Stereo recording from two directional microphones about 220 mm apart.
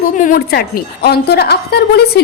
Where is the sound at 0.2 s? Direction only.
40° left (ahead or behind).